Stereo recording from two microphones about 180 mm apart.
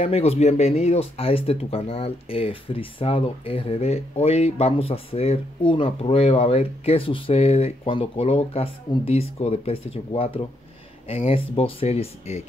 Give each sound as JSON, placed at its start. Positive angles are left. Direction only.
{"t": 0.0, "sound": "speech", "side_deg": 35}